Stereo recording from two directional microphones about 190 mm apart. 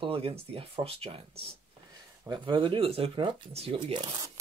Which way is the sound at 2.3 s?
25° right (ahead or behind).